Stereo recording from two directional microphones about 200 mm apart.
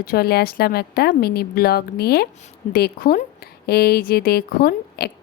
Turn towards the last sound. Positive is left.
turn(degrees=50)  # may be behind; listen again after turning